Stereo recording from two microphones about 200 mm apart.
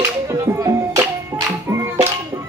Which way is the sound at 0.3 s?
15° right (ahead or behind).